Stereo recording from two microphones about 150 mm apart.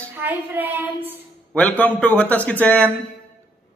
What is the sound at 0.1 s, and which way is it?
A woman's voice, 15° right (ahead or behind).